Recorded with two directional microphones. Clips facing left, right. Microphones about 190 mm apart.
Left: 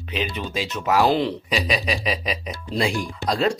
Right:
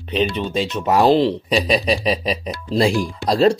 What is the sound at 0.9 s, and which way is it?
Speech, 25° right (ahead or behind).